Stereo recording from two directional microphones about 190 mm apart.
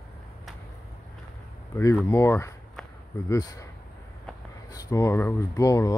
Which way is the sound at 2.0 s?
15° left (ahead or behind).